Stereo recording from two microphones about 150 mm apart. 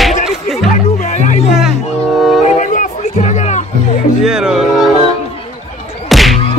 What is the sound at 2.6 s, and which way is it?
Music, 60° left (ahead or behind).